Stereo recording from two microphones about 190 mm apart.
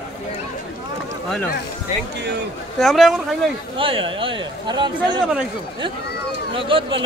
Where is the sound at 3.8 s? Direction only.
30° right (ahead or behind).